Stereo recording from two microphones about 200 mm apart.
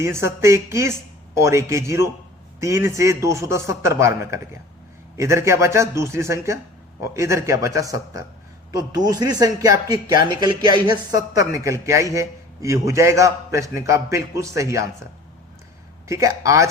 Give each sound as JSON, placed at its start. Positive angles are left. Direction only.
{"t": 0.0, "sound": "speech", "side_deg": -15}
{"t": 16.0, "sound": "speech", "side_deg": -15}